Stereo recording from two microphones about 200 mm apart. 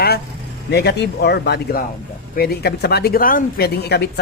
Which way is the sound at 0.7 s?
55° left (ahead or behind).